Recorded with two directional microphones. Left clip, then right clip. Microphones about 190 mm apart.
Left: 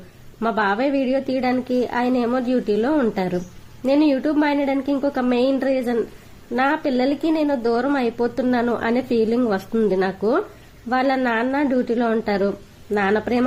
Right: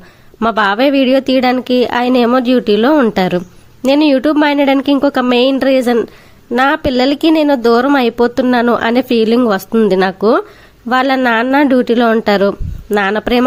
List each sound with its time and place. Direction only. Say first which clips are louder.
0.3 s a woman's voice: right 8 dB; 40° right (ahead or behind)